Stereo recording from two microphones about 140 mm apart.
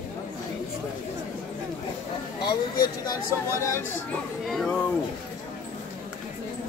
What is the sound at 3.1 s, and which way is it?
Speech, 20° left (ahead or behind).